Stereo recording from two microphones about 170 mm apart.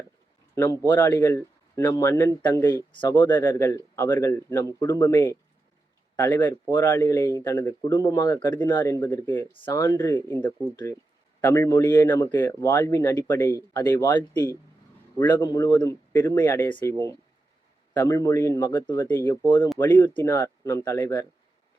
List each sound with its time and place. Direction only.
0.5 s a man's voice: 20° left (ahead or behind)
15.4 s speech: 25° left (ahead or behind)
16.1 s a man's voice: 10° left (ahead or behind)
17.9 s a man's voice: 15° left (ahead or behind)